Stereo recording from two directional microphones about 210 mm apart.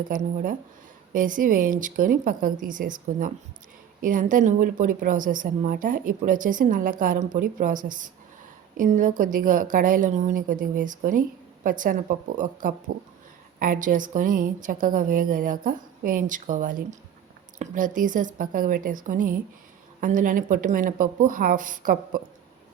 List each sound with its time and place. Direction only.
0.1 s a woman's voice: 35° right (ahead or behind)